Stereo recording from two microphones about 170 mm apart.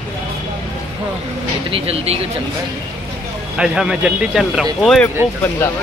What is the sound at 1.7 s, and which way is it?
Speech, 35° right (ahead or behind).